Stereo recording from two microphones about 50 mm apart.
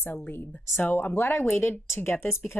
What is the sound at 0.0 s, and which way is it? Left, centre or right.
A woman's voice, left.